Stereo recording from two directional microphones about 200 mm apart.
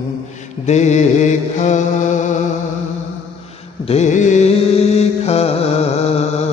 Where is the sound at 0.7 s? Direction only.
35° left (ahead or behind).